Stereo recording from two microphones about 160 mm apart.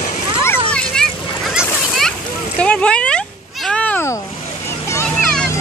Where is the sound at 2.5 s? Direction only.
5° left (ahead or behind).